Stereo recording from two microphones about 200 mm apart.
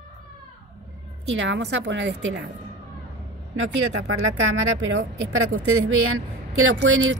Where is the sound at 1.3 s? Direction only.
65° right (ahead or behind).